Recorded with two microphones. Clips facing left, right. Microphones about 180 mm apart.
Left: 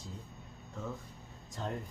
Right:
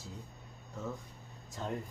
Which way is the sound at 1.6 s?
Centre (ahead or behind).